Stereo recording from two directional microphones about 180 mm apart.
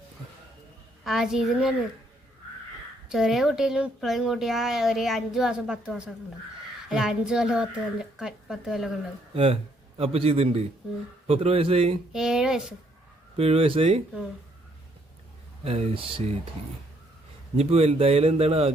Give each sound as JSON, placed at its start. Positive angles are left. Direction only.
{"t": 1.0, "sound": "speech", "side_deg": 0}
{"t": 3.1, "sound": "speech", "side_deg": 0}
{"t": 9.3, "sound": "speech", "side_deg": -30}
{"t": 12.1, "sound": "speech", "side_deg": -5}
{"t": 13.3, "sound": "speech", "side_deg": -35}
{"t": 15.6, "sound": "speech", "side_deg": -35}
{"t": 17.6, "sound": "speech", "side_deg": -35}